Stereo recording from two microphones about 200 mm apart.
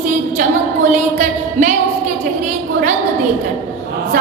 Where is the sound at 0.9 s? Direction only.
40° right (ahead or behind).